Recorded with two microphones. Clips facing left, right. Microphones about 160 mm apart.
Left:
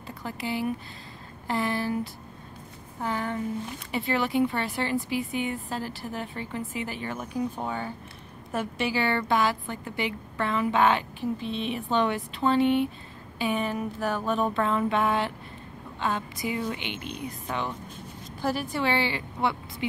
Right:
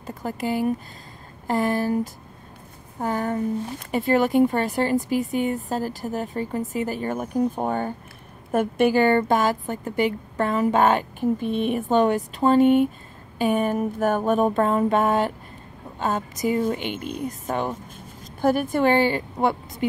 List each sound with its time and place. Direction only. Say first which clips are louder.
0.0 s a woman's voice: right 6 dB; 45° right (ahead or behind)
3.0 s a woman's voice: right 5 dB; 45° right (ahead or behind)